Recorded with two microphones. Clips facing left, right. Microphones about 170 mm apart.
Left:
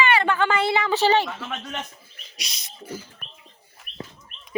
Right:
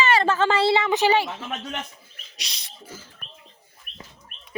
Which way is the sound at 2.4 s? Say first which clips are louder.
Left 2 dB; 35° right (ahead or behind).